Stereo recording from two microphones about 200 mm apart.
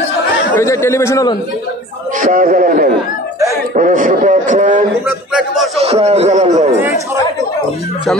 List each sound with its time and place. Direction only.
0.6 s speech: 15° left (ahead or behind)
2.1 s a man's voice: 45° right (ahead or behind)